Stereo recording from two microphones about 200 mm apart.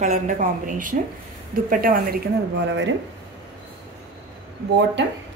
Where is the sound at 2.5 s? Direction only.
65° right (ahead or behind).